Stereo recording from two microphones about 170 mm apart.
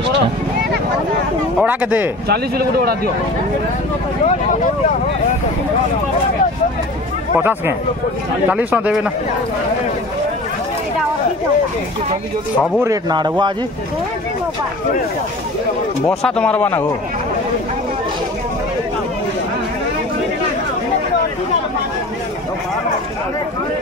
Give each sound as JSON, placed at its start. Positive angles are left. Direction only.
{"t": 1.6, "sound": "speech", "side_deg": -10}
{"t": 2.2, "sound": "speech", "side_deg": -65}
{"t": 7.3, "sound": "speech", "side_deg": -10}
{"t": 12.8, "sound": "speech", "side_deg": -25}
{"t": 16.2, "sound": "speech", "side_deg": 5}